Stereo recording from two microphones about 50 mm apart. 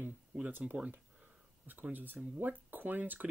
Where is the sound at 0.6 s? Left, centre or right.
Right.